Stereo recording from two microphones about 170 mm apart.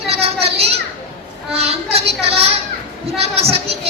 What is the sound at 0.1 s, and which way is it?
Children playing, 35° right (ahead or behind).